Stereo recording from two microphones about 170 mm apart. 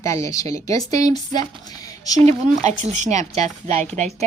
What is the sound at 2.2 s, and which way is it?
Speech, 40° right (ahead or behind).